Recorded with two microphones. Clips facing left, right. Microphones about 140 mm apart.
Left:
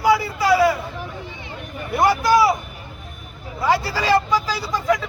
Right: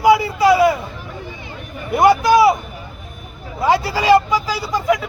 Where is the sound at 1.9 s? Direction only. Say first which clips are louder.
Right 4 dB; 20° right (ahead or behind).